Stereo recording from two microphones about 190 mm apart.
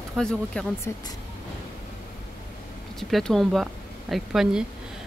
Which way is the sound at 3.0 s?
Centre (ahead or behind).